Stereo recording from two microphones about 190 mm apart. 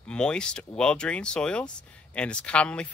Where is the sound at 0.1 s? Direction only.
5° left (ahead or behind).